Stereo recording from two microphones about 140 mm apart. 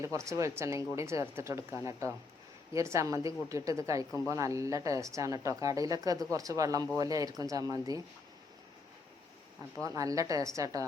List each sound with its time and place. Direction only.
0.0 s a woman's voice: 20° right (ahead or behind)
9.8 s a woman's voice: 25° right (ahead or behind)